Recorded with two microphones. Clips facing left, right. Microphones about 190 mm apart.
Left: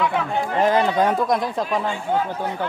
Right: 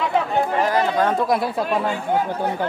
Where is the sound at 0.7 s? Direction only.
20° left (ahead or behind).